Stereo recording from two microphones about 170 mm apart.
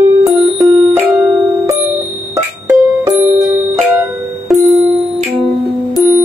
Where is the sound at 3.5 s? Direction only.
Centre (ahead or behind).